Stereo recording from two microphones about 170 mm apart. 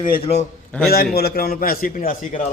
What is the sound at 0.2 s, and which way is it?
Speech, 40° left (ahead or behind).